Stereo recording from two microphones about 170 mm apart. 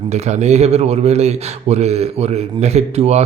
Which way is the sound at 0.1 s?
40° right (ahead or behind).